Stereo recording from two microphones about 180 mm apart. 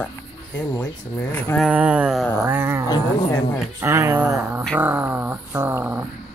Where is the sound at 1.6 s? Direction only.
5° right (ahead or behind).